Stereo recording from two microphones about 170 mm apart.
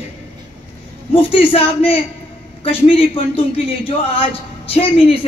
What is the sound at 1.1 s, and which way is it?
A man's voice, 35° left (ahead or behind).